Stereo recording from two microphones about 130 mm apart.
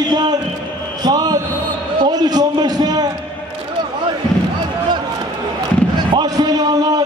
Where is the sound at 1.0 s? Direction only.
30° right (ahead or behind).